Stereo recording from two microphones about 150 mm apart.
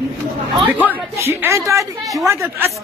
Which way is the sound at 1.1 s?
20° right (ahead or behind).